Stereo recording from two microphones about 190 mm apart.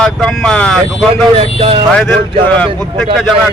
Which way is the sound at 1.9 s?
5° left (ahead or behind).